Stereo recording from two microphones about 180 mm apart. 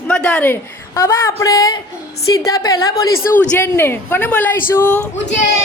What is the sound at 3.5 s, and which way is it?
A man's voice, 10° left (ahead or behind).